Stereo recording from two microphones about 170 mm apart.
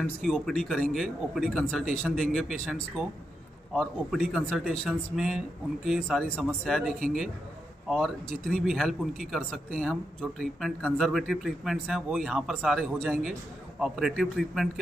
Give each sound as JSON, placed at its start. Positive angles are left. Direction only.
{"t": 0.2, "sound": "speech", "side_deg": 0}
{"t": 7.9, "sound": "speech", "side_deg": 0}